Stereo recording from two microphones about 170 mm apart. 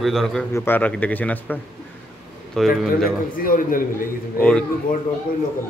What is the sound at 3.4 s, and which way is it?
Speech, 55° left (ahead or behind).